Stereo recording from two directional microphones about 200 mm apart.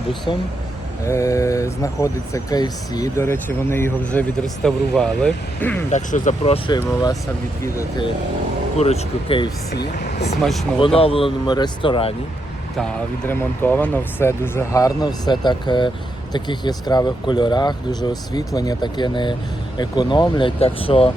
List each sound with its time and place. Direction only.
0.3 s speech: 25° left (ahead or behind)
5.9 s speech: 40° left (ahead or behind); by 8.0 s 15° left (ahead or behind)
8.8 s speech: 30° left (ahead or behind)
10.1 s vehicle: 30° left (ahead or behind)
10.4 s speech: centre (ahead or behind)
10.8 s speech: 25° left (ahead or behind)
12.7 s speech: 5° left (ahead or behind); by 21.1 s 25° left (ahead or behind)